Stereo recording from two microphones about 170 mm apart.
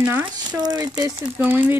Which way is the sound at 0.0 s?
10° right (ahead or behind).